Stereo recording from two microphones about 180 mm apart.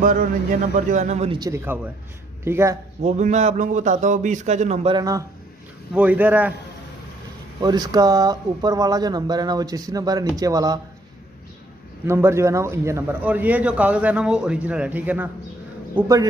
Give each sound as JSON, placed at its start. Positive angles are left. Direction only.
{"t": 0.0, "sound": "a man's voice", "side_deg": -45}
{"t": 1.4, "sound": "a man's voice", "side_deg": -15}
{"t": 3.0, "sound": "a man's voice", "side_deg": -40}
{"t": 4.9, "sound": "speech", "side_deg": -20}
{"t": 5.9, "sound": "a man's voice", "side_deg": -10}
{"t": 7.6, "sound": "speech", "side_deg": -20}
{"t": 12.1, "sound": "a man's voice", "side_deg": -15}